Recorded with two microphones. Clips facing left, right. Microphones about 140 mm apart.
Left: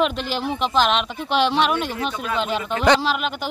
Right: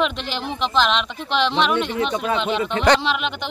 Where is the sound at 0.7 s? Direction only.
45° left (ahead or behind).